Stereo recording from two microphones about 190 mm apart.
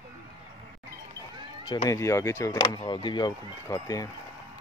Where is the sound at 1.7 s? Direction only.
20° left (ahead or behind).